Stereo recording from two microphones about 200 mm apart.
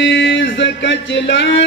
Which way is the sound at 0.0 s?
65° left (ahead or behind).